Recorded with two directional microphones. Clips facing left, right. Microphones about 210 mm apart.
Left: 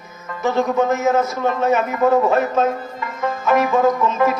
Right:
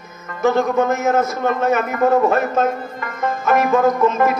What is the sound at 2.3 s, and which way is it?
Speech, 50° right (ahead or behind).